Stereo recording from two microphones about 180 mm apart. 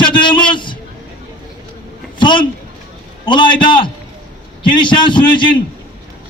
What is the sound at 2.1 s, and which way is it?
A woman's voice, 25° left (ahead or behind).